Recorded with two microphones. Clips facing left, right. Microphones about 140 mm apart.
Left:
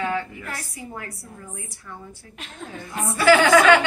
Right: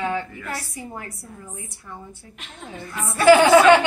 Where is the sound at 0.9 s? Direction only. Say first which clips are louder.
Even; 25° right (ahead or behind).